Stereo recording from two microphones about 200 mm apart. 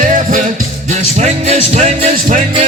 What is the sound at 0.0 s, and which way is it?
Music, 40° right (ahead or behind).